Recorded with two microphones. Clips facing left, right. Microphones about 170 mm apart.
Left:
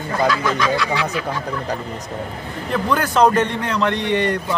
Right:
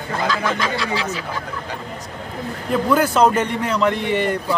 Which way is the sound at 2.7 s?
10° right (ahead or behind).